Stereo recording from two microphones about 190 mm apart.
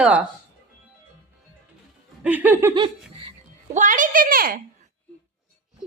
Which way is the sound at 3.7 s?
40° right (ahead or behind).